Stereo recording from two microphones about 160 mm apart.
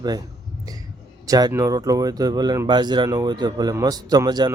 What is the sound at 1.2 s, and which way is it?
Speech, 25° right (ahead or behind).